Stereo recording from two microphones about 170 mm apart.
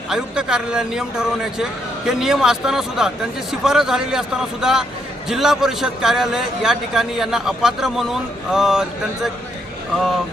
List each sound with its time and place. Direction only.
0.1 s a man's voice: 5° right (ahead or behind)